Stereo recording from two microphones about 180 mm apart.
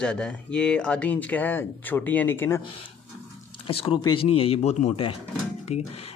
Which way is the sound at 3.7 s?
30° left (ahead or behind).